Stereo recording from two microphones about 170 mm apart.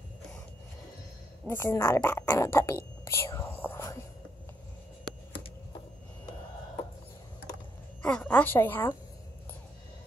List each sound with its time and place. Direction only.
1.5 s speech: 15° left (ahead or behind)
3.1 s whispering: 15° left (ahead or behind)
8.0 s speech: 5° left (ahead or behind)